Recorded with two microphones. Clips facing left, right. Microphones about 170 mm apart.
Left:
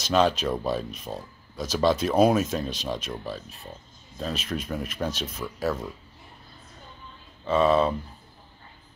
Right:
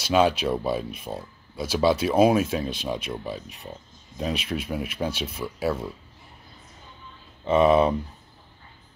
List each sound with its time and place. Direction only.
0.0 s speech: 10° right (ahead or behind)
7.4 s speech: 20° right (ahead or behind)